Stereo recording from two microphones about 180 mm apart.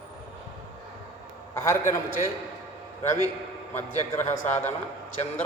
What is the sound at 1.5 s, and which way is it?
Speech, 15° left (ahead or behind).